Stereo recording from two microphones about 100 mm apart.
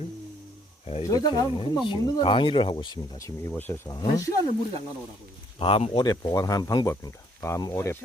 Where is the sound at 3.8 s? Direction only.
40° left (ahead or behind).